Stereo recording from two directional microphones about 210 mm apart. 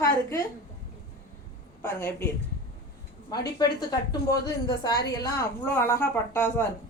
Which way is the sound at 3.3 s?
20° left (ahead or behind).